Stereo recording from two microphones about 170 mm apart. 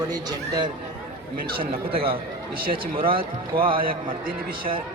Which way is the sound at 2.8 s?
55° right (ahead or behind).